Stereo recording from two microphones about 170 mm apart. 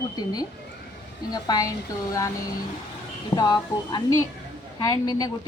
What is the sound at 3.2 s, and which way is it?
A woman's voice, 25° left (ahead or behind).